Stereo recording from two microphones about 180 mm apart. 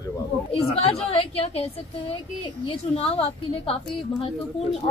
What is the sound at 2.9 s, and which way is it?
Speech, 35° left (ahead or behind).